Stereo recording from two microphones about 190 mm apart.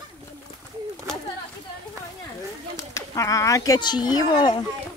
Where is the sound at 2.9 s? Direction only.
15° left (ahead or behind).